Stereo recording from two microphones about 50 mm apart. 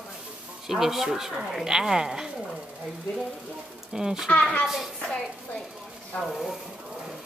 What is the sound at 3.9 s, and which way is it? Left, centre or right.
Speech, centre.